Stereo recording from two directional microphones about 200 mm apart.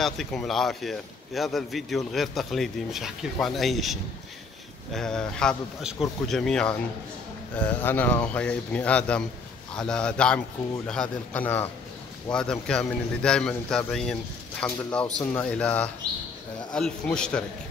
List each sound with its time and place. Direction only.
0.0 s a man's voice: centre (ahead or behind)